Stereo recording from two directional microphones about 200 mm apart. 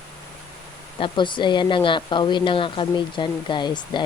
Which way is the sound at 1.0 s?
25° left (ahead or behind).